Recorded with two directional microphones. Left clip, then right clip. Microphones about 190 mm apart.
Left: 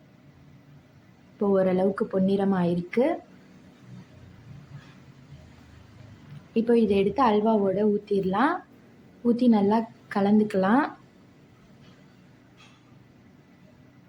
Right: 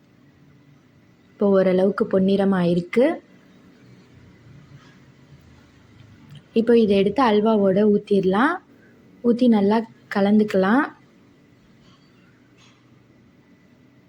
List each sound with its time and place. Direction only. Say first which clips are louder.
1.4 s a woman's voice: right 5 dB; 15° right (ahead or behind)
6.5 s a woman's voice: right 5 dB; 15° right (ahead or behind)